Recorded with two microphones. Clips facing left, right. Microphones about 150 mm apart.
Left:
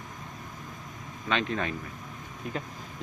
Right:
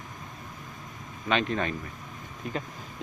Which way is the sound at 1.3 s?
Centre (ahead or behind).